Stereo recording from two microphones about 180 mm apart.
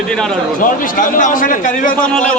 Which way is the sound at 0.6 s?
50° left (ahead or behind).